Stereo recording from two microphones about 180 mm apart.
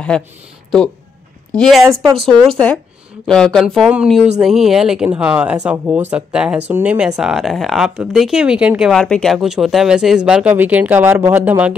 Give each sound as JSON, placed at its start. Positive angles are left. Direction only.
{"t": 0.1, "sound": "speech", "side_deg": 5}
{"t": 1.5, "sound": "a woman's voice", "side_deg": 5}
{"t": 1.8, "sound": "speech", "side_deg": -15}
{"t": 2.6, "sound": "speech", "side_deg": 10}